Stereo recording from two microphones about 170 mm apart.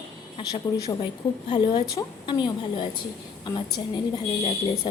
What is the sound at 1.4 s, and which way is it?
A woman's voice, 25° left (ahead or behind).